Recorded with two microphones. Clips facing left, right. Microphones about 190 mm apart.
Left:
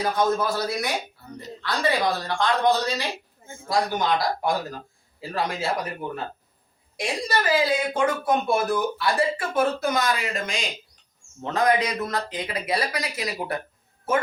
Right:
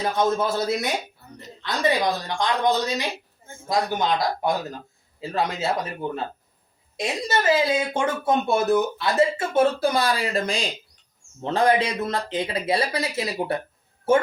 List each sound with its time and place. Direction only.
0.0 s a woman's voice: 25° right (ahead or behind)
6.9 s speech: 25° right (ahead or behind)